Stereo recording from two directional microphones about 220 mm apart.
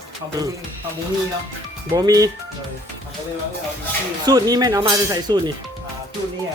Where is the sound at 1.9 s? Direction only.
15° right (ahead or behind).